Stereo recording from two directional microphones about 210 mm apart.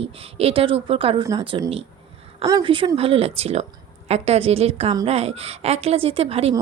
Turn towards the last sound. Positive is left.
turn(degrees=-30)  # may be behind; listen again after turning